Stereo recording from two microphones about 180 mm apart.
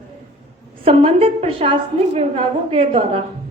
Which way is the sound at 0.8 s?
35° right (ahead or behind).